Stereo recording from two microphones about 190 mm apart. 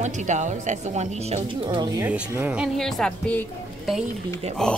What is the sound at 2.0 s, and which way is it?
Speech, 10° right (ahead or behind).